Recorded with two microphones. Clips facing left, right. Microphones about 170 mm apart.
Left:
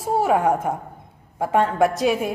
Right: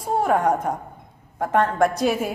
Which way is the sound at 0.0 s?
5° left (ahead or behind).